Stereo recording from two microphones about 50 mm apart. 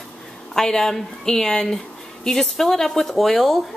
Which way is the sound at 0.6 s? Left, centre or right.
Centre.